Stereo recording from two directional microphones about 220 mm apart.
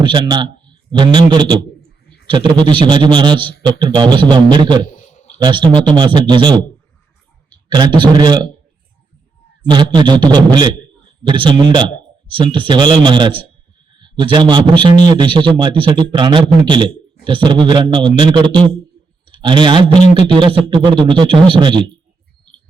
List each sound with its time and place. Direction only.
0.0 s a man's voice: 20° right (ahead or behind)
5.1 s a sound: 30° left (ahead or behind)
5.4 s a man's voice: 20° right (ahead or behind)
7.7 s a man's voice: 20° right (ahead or behind)
9.6 s a man's voice: 20° right (ahead or behind)